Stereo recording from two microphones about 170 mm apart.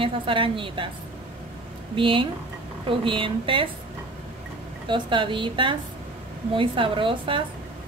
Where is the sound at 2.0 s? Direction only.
30° right (ahead or behind).